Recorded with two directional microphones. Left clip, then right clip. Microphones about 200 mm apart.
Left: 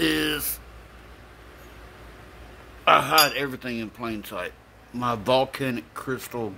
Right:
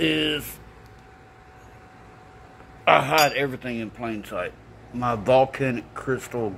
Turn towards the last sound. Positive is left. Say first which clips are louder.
# right 3 dB
turn(degrees=5)  # may be behind; listen again after turning